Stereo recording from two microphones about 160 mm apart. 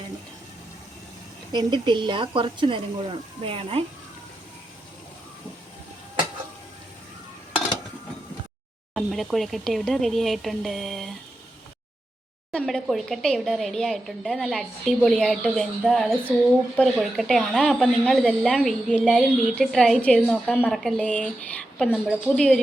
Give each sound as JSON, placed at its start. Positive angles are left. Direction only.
{"t": 1.5, "sound": "speech", "side_deg": -30}
{"t": 9.0, "sound": "speech", "side_deg": 0}
{"t": 12.5, "sound": "speech", "side_deg": 5}